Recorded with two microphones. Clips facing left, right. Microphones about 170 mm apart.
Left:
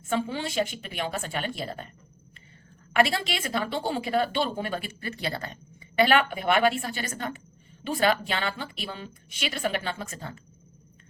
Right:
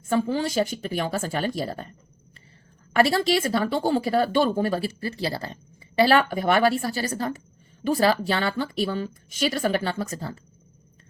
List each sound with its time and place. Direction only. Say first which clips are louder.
0.1 s a woman's voice: right 5 dB; 40° right (ahead or behind)
2.9 s a woman's voice: right 5 dB; 40° right (ahead or behind)